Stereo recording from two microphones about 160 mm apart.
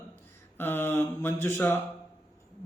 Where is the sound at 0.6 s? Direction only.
15° left (ahead or behind).